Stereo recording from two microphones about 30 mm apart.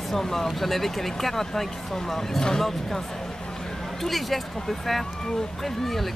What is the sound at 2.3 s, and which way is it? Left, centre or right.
Speech, left.